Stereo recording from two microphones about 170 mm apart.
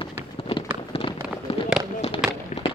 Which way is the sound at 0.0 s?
30° left (ahead or behind).